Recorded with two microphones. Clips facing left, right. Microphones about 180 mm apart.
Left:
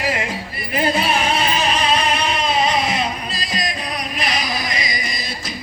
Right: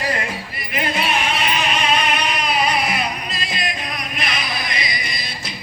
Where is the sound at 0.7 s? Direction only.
35° left (ahead or behind).